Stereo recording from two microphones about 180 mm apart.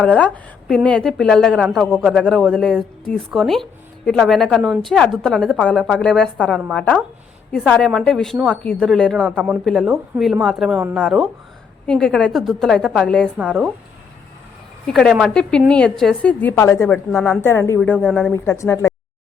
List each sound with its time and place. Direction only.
0.0 s a woman's voice: 10° left (ahead or behind)
13.3 s speech: 5° right (ahead or behind)
14.8 s a woman's voice: centre (ahead or behind)
17.1 s a woman's voice: centre (ahead or behind)
17.4 s a woman's voice: 15° left (ahead or behind)
18.4 s a woman's voice: 15° left (ahead or behind)